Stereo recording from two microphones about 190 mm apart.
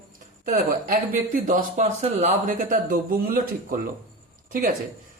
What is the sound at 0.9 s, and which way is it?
A man's voice, 45° right (ahead or behind).